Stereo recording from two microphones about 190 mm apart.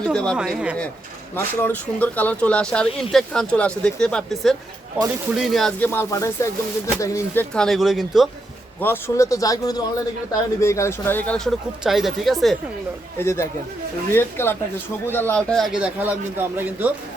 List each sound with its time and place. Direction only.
0.1 s speech: 5° left (ahead or behind)
1.4 s speech: 10° left (ahead or behind)
5.9 s speech: 15° left (ahead or behind)
7.5 s speech: centre (ahead or behind)
8.8 s speech: 10° left (ahead or behind)
13.1 s speech: 15° left (ahead or behind); by 16.9 s 10° right (ahead or behind)